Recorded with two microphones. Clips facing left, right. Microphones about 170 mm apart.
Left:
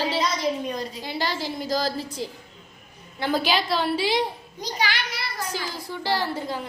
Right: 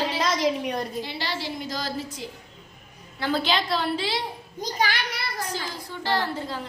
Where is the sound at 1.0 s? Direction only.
45° left (ahead or behind).